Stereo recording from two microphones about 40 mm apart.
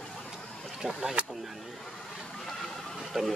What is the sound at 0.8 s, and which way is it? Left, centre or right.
Speech, centre.